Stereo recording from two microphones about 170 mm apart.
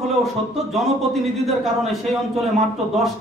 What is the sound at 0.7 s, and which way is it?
A man's voice, centre (ahead or behind).